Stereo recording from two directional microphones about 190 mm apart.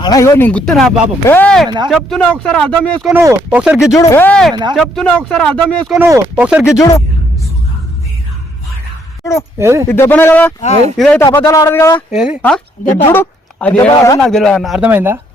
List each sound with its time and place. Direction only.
0.0 s speech: 20° left (ahead or behind)
3.1 s speech: 10° right (ahead or behind)
3.8 s speech: 15° left (ahead or behind)
6.0 s speech: 10° right (ahead or behind)
6.7 s speech: 15° left (ahead or behind)
9.2 s speech: 15° left (ahead or behind)
9.6 s speech: 15° right (ahead or behind)
9.9 s speech: 10° left (ahead or behind)
11.2 s speech: 15° left (ahead or behind)
12.1 s speech: 5° right (ahead or behind); by 14.2 s 15° left (ahead or behind)
14.2 s speech: 5° left (ahead or behind)